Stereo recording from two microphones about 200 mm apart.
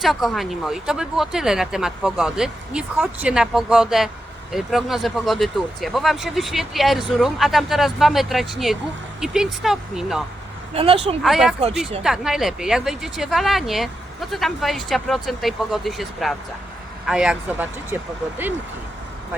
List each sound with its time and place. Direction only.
0.0 s speech: centre (ahead or behind)
10.8 s speech: 30° right (ahead or behind)
11.2 s speech: centre (ahead or behind)